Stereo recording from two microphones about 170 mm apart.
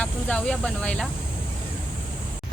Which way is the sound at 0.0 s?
5° left (ahead or behind).